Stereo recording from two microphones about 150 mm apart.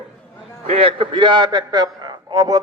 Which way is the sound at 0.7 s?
40° right (ahead or behind).